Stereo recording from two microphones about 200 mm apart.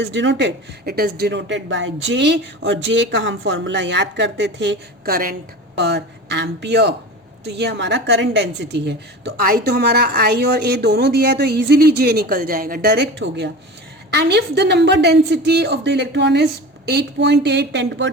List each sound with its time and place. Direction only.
0.0 s speech: 65° right (ahead or behind)